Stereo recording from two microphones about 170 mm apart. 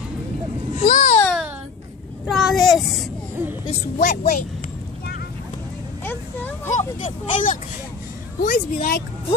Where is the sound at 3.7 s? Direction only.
45° left (ahead or behind).